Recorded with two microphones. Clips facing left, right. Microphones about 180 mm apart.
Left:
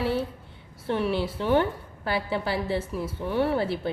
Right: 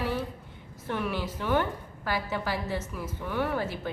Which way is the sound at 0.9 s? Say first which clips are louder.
Left 5 dB; 30° left (ahead or behind).